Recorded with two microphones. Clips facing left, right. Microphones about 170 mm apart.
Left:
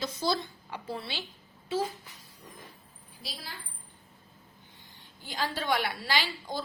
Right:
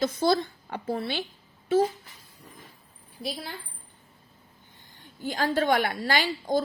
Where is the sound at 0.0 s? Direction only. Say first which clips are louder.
Right 7 dB; 55° right (ahead or behind).